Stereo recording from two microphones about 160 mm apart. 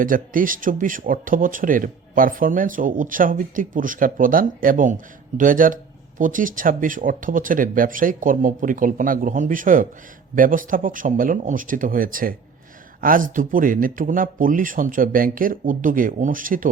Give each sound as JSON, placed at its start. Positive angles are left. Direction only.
{"t": 0.0, "sound": "speech", "side_deg": -60}